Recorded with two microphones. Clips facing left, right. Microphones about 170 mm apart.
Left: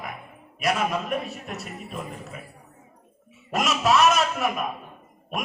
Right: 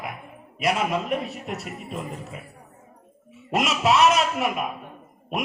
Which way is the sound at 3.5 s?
25° right (ahead or behind).